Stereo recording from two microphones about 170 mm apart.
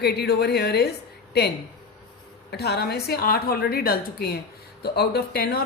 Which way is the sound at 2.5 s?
70° left (ahead or behind).